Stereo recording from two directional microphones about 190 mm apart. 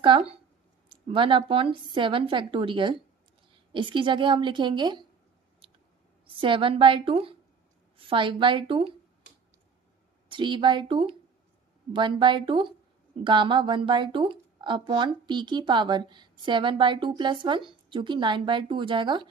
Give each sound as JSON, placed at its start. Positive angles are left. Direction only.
{"t": 0.0, "sound": "speech", "side_deg": -30}
{"t": 6.2, "sound": "speech", "side_deg": -25}
{"t": 10.2, "sound": "speech", "side_deg": -25}